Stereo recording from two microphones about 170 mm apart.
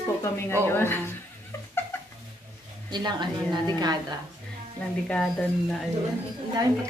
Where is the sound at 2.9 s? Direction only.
25° right (ahead or behind).